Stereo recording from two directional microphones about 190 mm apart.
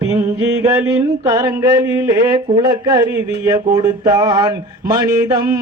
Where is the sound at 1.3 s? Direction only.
15° right (ahead or behind).